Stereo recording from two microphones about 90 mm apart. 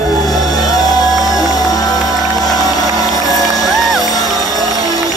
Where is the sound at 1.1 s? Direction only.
Centre (ahead or behind).